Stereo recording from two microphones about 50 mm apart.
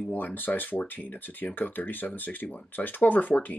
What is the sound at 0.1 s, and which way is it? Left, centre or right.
Speech, left.